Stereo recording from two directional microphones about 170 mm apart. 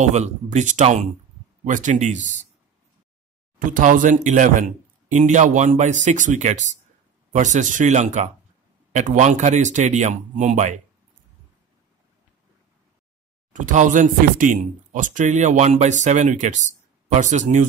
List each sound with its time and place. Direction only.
0.0 s speech: 45° right (ahead or behind)
3.5 s speech: 50° right (ahead or behind)
13.5 s speech: 50° right (ahead or behind)